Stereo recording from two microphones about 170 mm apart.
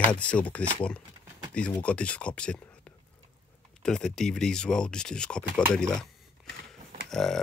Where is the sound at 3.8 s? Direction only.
5° left (ahead or behind).